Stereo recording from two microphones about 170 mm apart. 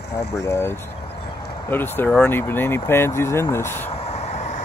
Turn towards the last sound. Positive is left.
turn(degrees=45)  # may be behind; listen again after turning